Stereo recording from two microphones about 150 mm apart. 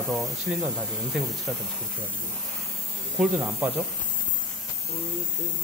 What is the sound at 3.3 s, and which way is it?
Speech, 15° right (ahead or behind).